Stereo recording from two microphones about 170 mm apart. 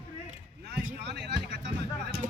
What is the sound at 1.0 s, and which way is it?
Speech, 85° right.